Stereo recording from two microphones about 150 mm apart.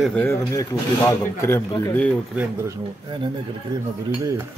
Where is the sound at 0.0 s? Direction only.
10° left (ahead or behind).